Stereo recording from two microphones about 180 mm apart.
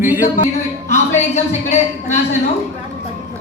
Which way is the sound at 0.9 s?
40° left (ahead or behind).